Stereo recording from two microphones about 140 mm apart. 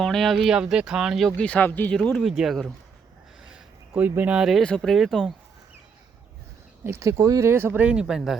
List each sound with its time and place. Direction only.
0.0 s speech: centre (ahead or behind)
1.4 s speech: 10° left (ahead or behind)
2.0 s speech: centre (ahead or behind)
3.5 s speech: 15° right (ahead or behind)
6.8 s speech: 20° right (ahead or behind); by 8.4 s 5° right (ahead or behind)